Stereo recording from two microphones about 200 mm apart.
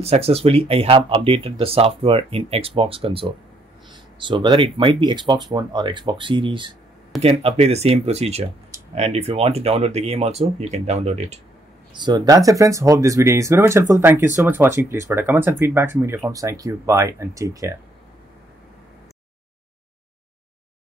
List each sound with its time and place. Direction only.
0.0 s speech: 30° right (ahead or behind)
11.9 s speech: 20° right (ahead or behind)